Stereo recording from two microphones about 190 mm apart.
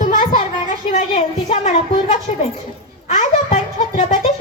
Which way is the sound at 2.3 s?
30° left (ahead or behind).